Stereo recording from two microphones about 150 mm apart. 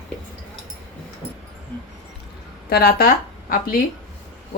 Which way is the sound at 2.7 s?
90° left.